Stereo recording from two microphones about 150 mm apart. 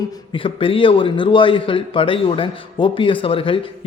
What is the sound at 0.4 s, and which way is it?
A man's voice, 35° left (ahead or behind).